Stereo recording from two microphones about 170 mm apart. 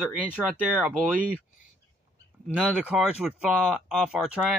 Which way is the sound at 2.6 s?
10° right (ahead or behind).